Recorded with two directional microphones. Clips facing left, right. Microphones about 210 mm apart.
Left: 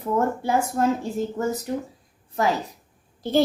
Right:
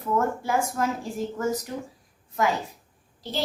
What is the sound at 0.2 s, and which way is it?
Speech, 30° left (ahead or behind).